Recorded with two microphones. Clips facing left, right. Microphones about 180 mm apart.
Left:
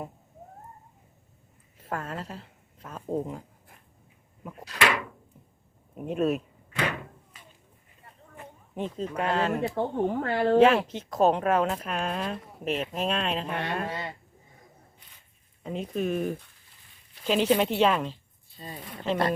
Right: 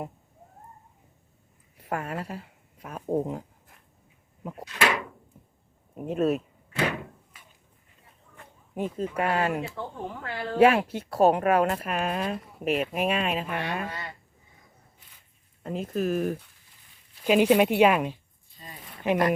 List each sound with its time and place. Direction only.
1.8 s a woman's voice: 10° right (ahead or behind)
6.1 s speech: centre (ahead or behind)
8.7 s speech: 10° right (ahead or behind)
9.7 s speech: 55° left (ahead or behind)
10.6 s speech: 10° right (ahead or behind)
13.9 s speech: 20° left (ahead or behind)
15.6 s speech: centre (ahead or behind)
18.5 s speech: 30° left (ahead or behind)
19.1 s speech: 15° right (ahead or behind)